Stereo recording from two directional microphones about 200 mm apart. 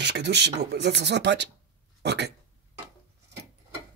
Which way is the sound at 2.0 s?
55° right (ahead or behind).